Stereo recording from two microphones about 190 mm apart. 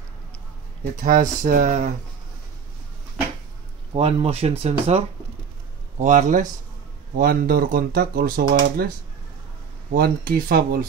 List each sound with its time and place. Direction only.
1.0 s speech: 45° right (ahead or behind)
3.9 s speech: 35° right (ahead or behind); by 8.9 s 50° right (ahead or behind)
9.9 s speech: 50° right (ahead or behind)